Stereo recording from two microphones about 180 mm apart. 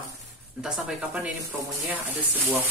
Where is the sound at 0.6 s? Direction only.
5° right (ahead or behind).